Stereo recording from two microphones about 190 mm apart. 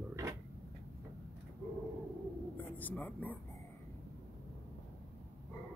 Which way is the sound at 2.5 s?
10° left (ahead or behind).